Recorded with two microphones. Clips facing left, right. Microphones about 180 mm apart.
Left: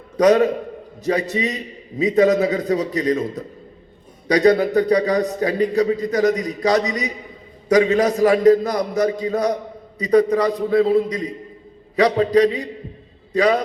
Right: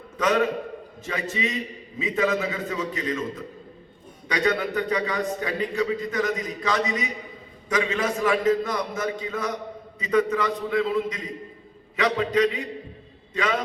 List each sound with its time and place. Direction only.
0.2 s a man's voice: 40° left (ahead or behind)